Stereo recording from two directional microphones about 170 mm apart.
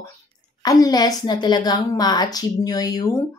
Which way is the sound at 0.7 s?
20° left (ahead or behind).